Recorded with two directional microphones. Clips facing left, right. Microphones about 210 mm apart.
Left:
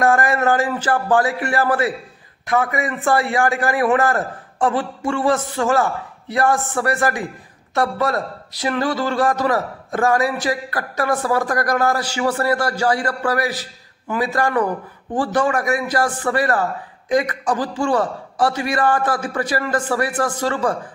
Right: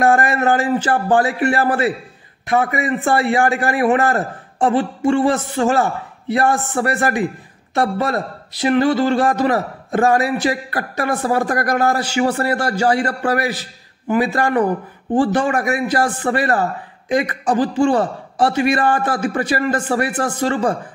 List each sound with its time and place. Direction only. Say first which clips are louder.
0.0 s a man's voice: right 1 dB; 25° right (ahead or behind)